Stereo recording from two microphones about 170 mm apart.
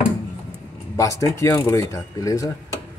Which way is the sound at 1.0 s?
20° left (ahead or behind).